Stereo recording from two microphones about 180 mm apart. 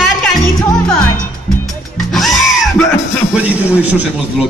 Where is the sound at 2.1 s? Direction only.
Centre (ahead or behind).